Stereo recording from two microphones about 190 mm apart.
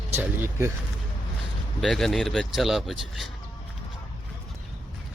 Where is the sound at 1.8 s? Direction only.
Centre (ahead or behind).